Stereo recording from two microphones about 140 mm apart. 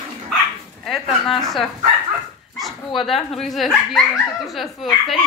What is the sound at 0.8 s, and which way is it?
Speech, centre (ahead or behind).